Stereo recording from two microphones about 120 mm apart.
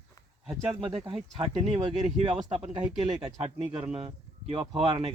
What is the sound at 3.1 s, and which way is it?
Speech, 30° right (ahead or behind).